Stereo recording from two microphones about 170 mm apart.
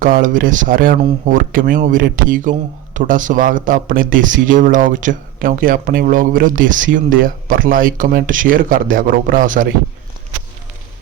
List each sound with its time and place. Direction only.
0.0 s speech: 55° right (ahead or behind)